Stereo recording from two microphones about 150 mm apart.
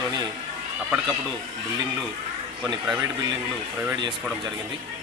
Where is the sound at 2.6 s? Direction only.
5° right (ahead or behind).